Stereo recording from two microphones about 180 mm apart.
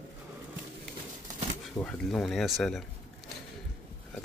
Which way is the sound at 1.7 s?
5° left (ahead or behind).